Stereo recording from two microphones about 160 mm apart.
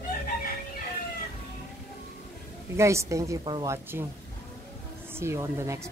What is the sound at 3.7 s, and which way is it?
Speech, 15° right (ahead or behind).